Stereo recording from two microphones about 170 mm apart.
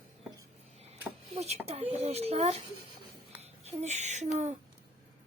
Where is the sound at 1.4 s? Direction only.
40° right (ahead or behind).